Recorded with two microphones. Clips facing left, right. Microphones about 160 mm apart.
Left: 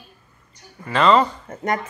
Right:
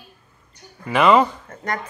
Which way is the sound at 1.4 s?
25° left (ahead or behind).